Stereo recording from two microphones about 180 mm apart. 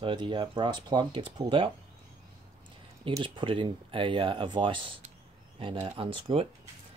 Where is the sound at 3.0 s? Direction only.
25° right (ahead or behind).